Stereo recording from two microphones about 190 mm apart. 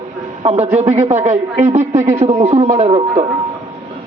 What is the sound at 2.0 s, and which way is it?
Speech, 15° right (ahead or behind).